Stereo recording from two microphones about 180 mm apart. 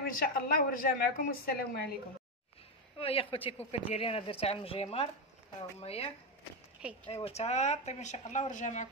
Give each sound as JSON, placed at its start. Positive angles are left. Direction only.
{"t": 0.0, "sound": "a woman's voice", "side_deg": 55}
{"t": 3.0, "sound": "a woman's voice", "side_deg": 30}